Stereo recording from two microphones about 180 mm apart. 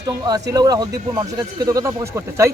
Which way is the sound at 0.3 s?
20° right (ahead or behind).